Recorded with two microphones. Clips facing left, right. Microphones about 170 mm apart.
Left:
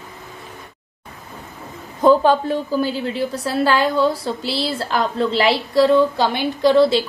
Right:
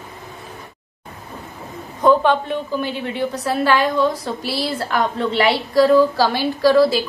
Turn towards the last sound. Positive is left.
turn(degrees=25)  # may be behind; listen again after turning